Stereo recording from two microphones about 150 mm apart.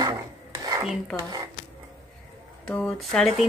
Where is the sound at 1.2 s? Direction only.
25° right (ahead or behind).